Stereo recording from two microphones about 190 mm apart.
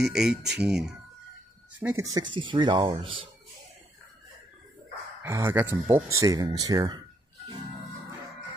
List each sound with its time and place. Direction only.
0.0 s speech: centre (ahead or behind)
1.8 s speech: 10° right (ahead or behind)
5.2 s speech: 15° right (ahead or behind)